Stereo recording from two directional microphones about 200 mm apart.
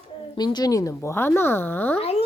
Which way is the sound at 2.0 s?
30° left (ahead or behind).